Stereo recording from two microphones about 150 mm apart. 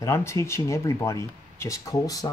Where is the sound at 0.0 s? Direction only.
20° left (ahead or behind).